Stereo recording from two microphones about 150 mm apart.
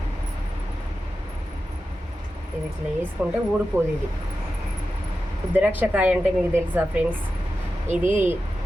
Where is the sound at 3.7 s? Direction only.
15° right (ahead or behind).